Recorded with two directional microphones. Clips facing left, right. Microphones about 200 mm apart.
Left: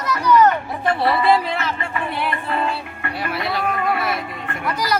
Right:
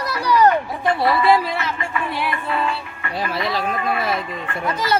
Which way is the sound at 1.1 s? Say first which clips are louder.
Right 1 dB; 25° left (ahead or behind).